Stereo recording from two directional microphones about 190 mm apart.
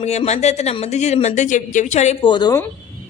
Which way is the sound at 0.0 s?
35° left (ahead or behind).